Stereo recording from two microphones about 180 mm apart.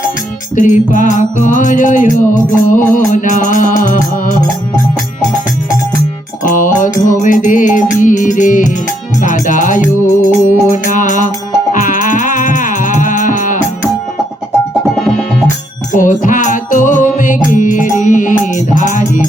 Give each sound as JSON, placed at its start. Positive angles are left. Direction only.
{"t": 0.5, "sound": "music", "side_deg": 45}
{"t": 6.4, "sound": "music", "side_deg": 45}
{"t": 15.9, "sound": "music", "side_deg": 45}